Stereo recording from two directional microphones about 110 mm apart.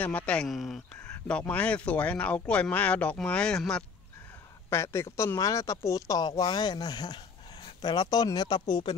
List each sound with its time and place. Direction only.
0.0 s speech: 15° left (ahead or behind)
0.5 s speech: centre (ahead or behind)
1.2 s speech: 15° left (ahead or behind)
4.6 s speech: 25° left (ahead or behind)